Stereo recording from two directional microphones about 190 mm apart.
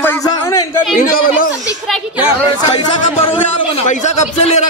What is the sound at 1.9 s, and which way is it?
Speech, 5° right (ahead or behind).